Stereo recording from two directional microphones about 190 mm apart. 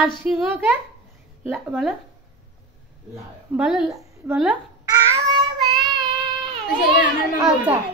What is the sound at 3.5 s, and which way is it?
A woman's voice, 5° right (ahead or behind).